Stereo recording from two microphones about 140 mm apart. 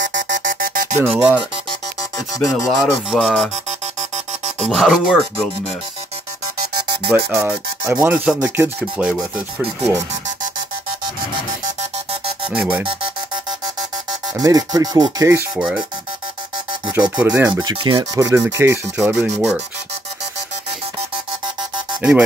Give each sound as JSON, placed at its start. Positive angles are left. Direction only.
{"t": 0.5, "sound": "music", "side_deg": -85}
{"t": 1.0, "sound": "speech", "side_deg": -15}
{"t": 2.0, "sound": "speech", "side_deg": 25}
{"t": 2.7, "sound": "speech", "side_deg": 0}
{"t": 4.6, "sound": "speech", "side_deg": 0}
{"t": 7.1, "sound": "speech", "side_deg": -15}
{"t": 12.4, "sound": "speech", "side_deg": -10}
{"t": 12.8, "sound": "alarm", "side_deg": -40}
{"t": 14.4, "sound": "speech", "side_deg": -25}
{"t": 17.2, "sound": "speech", "side_deg": -10}
{"t": 17.5, "sound": "speech", "side_deg": -30}
{"t": 18.1, "sound": "speech", "side_deg": -20}